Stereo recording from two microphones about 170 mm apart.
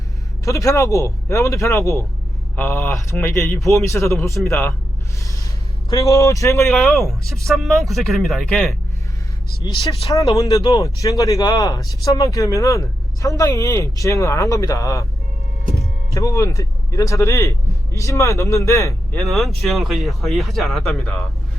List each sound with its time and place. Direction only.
0.4 s speech: 20° left (ahead or behind)
5.2 s a sound: 20° left (ahead or behind)
5.9 s speech: 20° left (ahead or behind)
6.7 s speech: centre (ahead or behind)
9.6 s speech: 25° left (ahead or behind)
16.1 s speech: 20° left (ahead or behind)
19.3 s speech: centre (ahead or behind)